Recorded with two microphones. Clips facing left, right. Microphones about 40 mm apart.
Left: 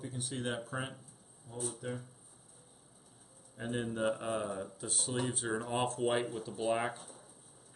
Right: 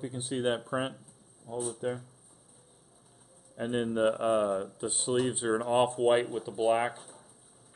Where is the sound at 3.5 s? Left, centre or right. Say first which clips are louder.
Right 7 dB; right.